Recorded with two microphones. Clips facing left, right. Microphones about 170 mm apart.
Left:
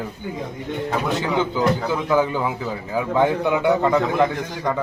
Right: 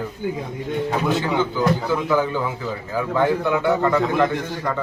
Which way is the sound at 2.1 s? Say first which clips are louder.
Left 4 dB; 15° left (ahead or behind).